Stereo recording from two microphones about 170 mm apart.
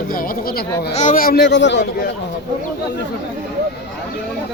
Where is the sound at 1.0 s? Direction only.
50° left (ahead or behind); by 2.1 s 90° left.